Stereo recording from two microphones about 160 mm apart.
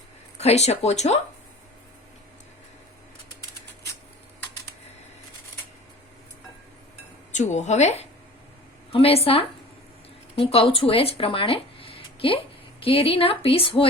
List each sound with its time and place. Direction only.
0.3 s speech: 40° left (ahead or behind)
7.3 s speech: 45° left (ahead or behind)